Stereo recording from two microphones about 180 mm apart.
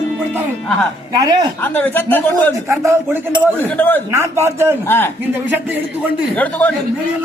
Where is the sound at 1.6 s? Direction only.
10° left (ahead or behind).